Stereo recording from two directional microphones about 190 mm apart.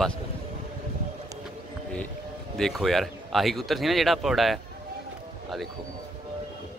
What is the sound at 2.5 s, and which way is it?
Speech, centre (ahead or behind).